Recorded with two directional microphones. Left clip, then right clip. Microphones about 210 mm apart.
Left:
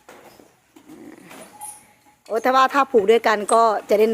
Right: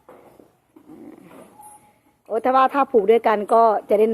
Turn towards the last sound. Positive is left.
turn(degrees=10)  # may be behind; listen again after turning